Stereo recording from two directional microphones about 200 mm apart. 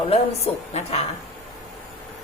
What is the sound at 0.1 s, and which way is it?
Speech, 30° left (ahead or behind).